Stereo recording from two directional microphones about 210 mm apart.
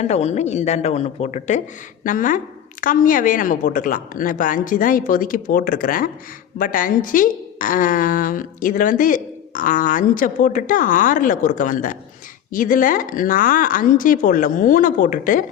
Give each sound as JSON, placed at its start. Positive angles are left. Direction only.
{"t": 0.0, "sound": "a woman's voice", "side_deg": 30}